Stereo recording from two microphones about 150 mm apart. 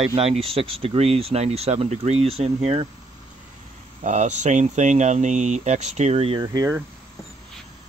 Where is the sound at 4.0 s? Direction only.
55° right (ahead or behind).